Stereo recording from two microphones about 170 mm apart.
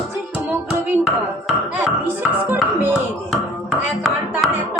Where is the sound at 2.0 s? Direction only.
10° right (ahead or behind).